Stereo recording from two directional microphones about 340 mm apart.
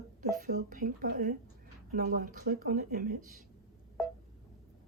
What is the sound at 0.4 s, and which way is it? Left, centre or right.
Speech, right.